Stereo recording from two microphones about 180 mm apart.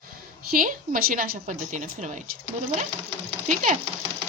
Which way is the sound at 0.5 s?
50° right (ahead or behind).